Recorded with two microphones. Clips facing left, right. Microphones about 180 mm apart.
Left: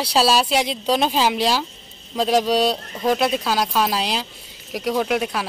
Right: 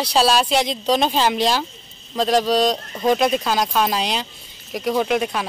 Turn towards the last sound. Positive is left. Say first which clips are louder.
# right 1 dB
turn(degrees=5)  # may be behind; listen again after turning